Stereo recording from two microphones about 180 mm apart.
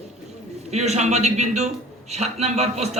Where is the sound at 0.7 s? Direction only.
40° right (ahead or behind).